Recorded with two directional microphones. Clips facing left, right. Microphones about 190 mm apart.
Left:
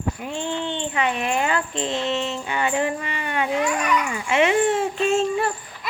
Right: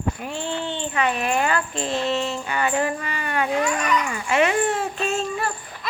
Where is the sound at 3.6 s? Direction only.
10° left (ahead or behind).